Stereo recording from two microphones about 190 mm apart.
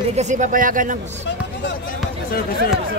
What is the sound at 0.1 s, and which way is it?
Speech, 40° right (ahead or behind).